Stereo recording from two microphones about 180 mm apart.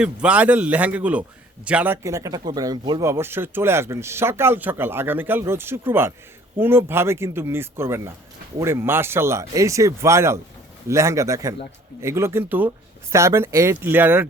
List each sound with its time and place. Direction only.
0.0 s speech: 5° right (ahead or behind)